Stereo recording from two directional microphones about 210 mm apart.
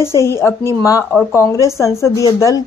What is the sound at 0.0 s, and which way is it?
A woman's voice, 15° left (ahead or behind).